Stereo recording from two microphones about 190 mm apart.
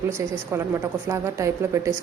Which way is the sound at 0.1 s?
15° right (ahead or behind).